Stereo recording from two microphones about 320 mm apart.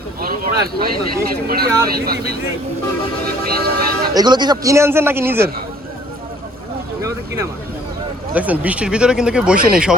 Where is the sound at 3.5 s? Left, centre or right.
Right.